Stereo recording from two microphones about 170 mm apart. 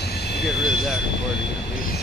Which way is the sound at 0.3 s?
75° left (ahead or behind).